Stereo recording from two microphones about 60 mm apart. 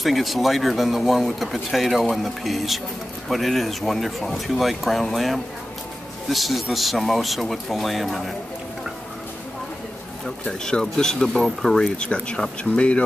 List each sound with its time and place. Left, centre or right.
0.0 s speech: centre
10.4 s speech: centre